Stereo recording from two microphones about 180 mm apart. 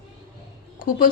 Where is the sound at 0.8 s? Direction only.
50° left (ahead or behind).